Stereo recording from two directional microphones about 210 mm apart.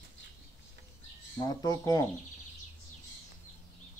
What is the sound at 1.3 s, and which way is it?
Speech, 15° left (ahead or behind).